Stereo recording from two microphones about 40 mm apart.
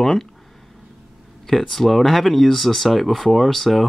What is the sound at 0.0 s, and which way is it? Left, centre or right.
Speech, centre.